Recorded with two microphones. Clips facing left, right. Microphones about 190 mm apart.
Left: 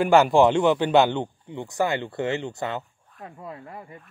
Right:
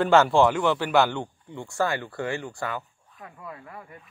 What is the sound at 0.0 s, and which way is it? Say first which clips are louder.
Speech: left 2 dB; 15° left (ahead or behind).